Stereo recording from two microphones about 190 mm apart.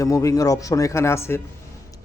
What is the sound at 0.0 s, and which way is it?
A man's voice, 15° left (ahead or behind).